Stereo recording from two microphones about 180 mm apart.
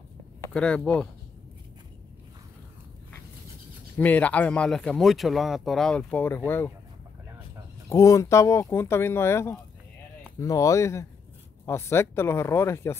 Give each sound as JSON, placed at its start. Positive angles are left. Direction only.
{"t": 0.5, "sound": "speech", "side_deg": 5}
{"t": 4.0, "sound": "speech", "side_deg": 10}
{"t": 7.9, "sound": "speech", "side_deg": 20}